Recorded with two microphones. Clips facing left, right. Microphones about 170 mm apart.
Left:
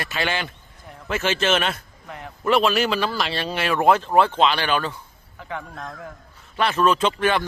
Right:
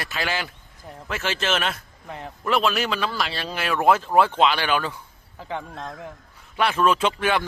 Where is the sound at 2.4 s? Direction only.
Centre (ahead or behind).